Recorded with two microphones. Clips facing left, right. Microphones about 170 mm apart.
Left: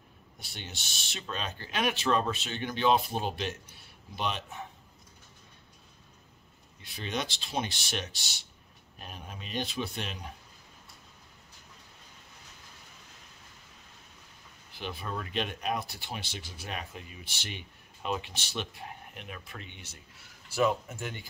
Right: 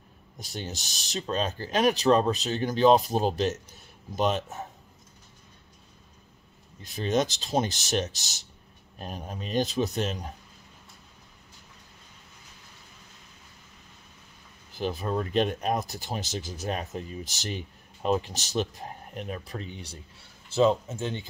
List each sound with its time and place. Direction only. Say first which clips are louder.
0.4 s speech: right 8 dB; 40° right (ahead or behind)
6.8 s speech: right 9 dB; 40° right (ahead or behind)
14.7 s speech: right 8 dB; 40° right (ahead or behind)
20.4 s speech: right 5 dB; 25° right (ahead or behind)